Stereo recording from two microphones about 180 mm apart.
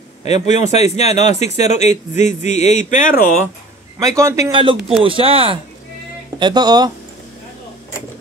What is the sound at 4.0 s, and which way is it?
Speech, 15° right (ahead or behind).